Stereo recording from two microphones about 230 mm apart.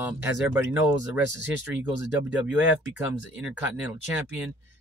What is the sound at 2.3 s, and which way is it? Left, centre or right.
Speech, centre.